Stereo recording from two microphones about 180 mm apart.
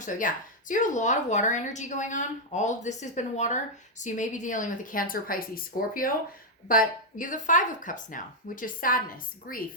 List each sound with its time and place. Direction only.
0.0 s speech: 45° left (ahead or behind)